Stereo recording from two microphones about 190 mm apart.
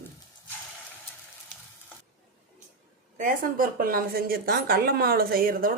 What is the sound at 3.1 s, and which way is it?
A woman's voice, 45° right (ahead or behind).